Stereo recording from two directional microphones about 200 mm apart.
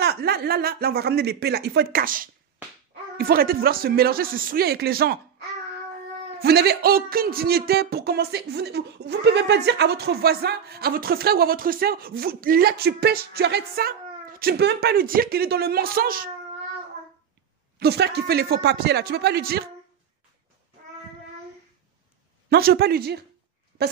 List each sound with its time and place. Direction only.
0.0 s speech: 55° right (ahead or behind)
6.4 s speech: 55° right (ahead or behind)
17.7 s speech: 55° right (ahead or behind)
22.5 s speech: 50° right (ahead or behind)